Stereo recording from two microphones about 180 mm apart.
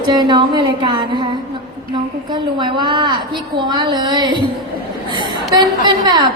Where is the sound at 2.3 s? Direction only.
25° right (ahead or behind).